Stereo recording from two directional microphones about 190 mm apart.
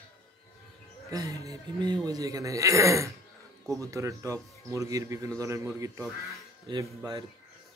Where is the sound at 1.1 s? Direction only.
20° right (ahead or behind).